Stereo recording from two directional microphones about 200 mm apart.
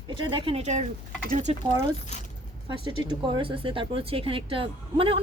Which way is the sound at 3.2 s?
25° right (ahead or behind).